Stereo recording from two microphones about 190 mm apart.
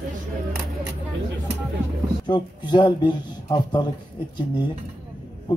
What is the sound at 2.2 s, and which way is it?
A man's voice, 25° left (ahead or behind).